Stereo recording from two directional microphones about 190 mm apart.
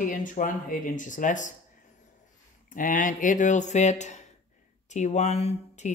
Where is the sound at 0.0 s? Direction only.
45° left (ahead or behind).